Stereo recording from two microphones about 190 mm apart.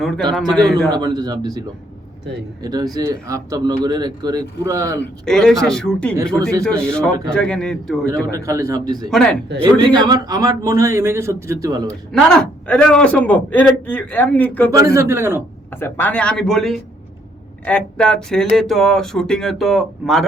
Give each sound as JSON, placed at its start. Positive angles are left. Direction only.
{"t": 0.5, "sound": "speech", "side_deg": 5}
{"t": 0.9, "sound": "speech", "side_deg": -20}
{"t": 5.2, "sound": "speech", "side_deg": 0}
{"t": 8.3, "sound": "a man's voice", "side_deg": -15}
{"t": 9.0, "sound": "speech", "side_deg": 5}
{"t": 9.8, "sound": "a man's voice", "side_deg": -25}
{"t": 11.9, "sound": "a man's voice", "side_deg": 5}
{"t": 14.7, "sound": "a man's voice", "side_deg": -15}
{"t": 15.7, "sound": "a man's voice", "side_deg": 10}